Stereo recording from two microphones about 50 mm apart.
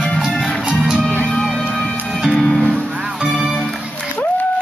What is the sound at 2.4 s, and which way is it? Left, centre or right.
Music, centre.